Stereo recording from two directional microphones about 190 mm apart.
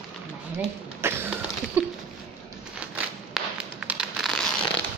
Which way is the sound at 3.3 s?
5° right (ahead or behind).